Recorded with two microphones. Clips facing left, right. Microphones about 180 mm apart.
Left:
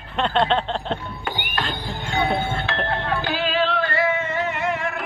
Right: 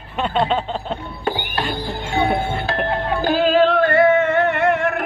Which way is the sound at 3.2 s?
45° right (ahead or behind).